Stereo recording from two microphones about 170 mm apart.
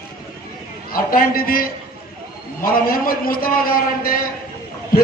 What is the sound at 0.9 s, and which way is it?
A man's voice, 60° left (ahead or behind).